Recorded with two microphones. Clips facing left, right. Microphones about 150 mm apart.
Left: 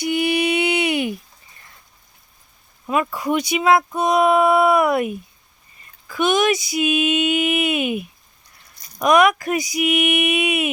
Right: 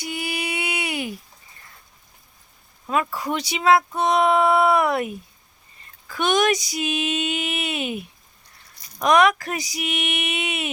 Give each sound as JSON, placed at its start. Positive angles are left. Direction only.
{"t": 0.0, "sound": "mantra", "side_deg": 20}
{"t": 3.2, "sound": "speech", "side_deg": 10}
{"t": 6.4, "sound": "speech", "side_deg": -40}
{"t": 9.0, "sound": "speech", "side_deg": 10}
{"t": 9.6, "sound": "speech", "side_deg": -35}